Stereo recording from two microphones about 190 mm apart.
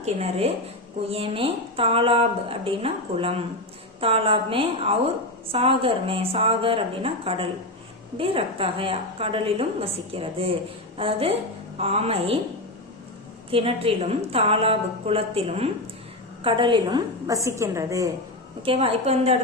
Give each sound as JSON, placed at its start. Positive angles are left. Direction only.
{"t": 0.0, "sound": "a woman's voice", "side_deg": -35}
{"t": 13.5, "sound": "a woman's voice", "side_deg": -30}
{"t": 18.6, "sound": "a woman's voice", "side_deg": -30}